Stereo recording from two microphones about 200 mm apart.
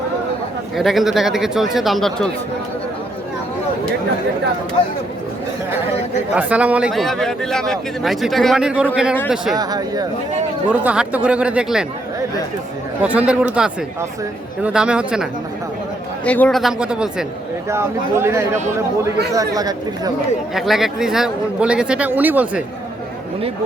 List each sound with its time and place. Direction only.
0.8 s speech: centre (ahead or behind)
4.8 s speech: 25° left (ahead or behind)
6.3 s speech: 5° right (ahead or behind)
9.6 s speech: 20° right (ahead or behind)
10.7 s speech: 5° right (ahead or behind)
13.0 s speech: 5° right (ahead or behind)
14.6 s speech: 5° right (ahead or behind)
16.2 s speech: 5° left (ahead or behind); by 19.7 s 20° right (ahead or behind)
20.5 s speech: centre (ahead or behind)